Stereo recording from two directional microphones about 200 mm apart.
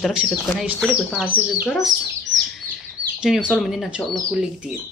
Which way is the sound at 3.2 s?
5° right (ahead or behind).